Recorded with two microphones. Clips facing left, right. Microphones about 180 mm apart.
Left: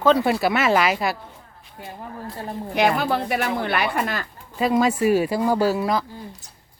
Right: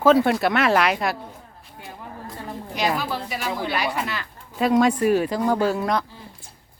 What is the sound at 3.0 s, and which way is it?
Speech, 60° left (ahead or behind).